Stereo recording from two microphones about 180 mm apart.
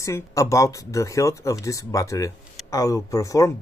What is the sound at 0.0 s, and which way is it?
Speech, 15° left (ahead or behind).